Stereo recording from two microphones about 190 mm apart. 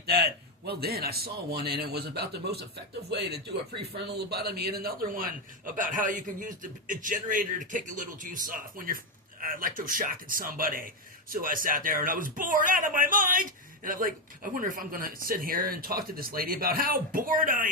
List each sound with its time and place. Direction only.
0.0 s a man's voice: 55° right (ahead or behind)